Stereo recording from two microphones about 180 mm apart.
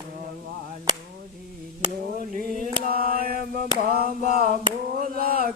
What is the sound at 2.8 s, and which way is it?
Mantra, 55° right (ahead or behind).